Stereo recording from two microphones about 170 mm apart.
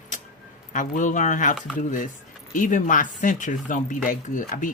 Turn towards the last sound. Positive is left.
turn(degrees=55)  # may be behind; listen again after turning